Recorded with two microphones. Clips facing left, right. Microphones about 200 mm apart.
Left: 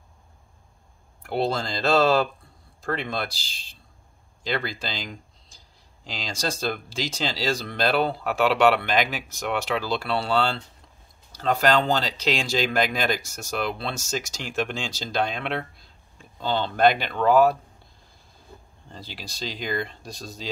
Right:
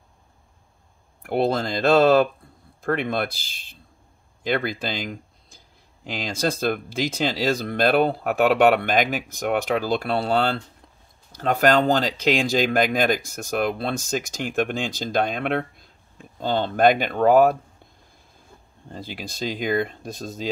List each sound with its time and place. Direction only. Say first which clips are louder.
1.2 s speech: right 4 dB; 55° right (ahead or behind)
18.9 s speech: right 6 dB; 50° right (ahead or behind)